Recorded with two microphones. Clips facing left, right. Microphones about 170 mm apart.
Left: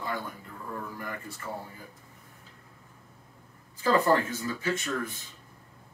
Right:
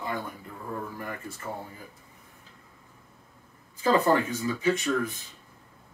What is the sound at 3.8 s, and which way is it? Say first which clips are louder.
Speech: right 1 dB; 20° right (ahead or behind).